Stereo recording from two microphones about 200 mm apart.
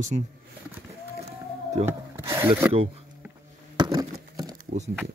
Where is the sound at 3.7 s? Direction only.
20° right (ahead or behind).